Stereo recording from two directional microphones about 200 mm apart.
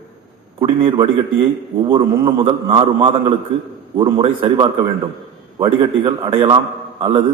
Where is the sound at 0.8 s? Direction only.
25° right (ahead or behind).